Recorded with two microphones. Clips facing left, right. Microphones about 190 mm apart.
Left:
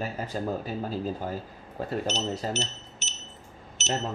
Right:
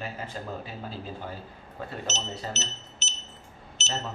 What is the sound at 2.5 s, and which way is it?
Speech, 15° left (ahead or behind).